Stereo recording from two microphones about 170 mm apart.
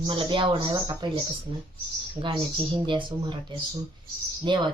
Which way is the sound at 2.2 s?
30° right (ahead or behind).